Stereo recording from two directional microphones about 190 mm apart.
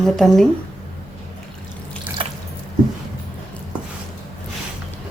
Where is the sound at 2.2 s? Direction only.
25° right (ahead or behind).